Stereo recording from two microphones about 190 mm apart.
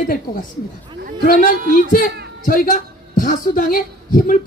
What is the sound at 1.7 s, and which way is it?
Speech, 45° left (ahead or behind).